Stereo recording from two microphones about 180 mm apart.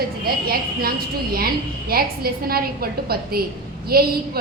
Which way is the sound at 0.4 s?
55° right (ahead or behind).